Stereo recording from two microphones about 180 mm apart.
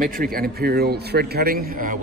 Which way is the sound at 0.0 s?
55° right (ahead or behind).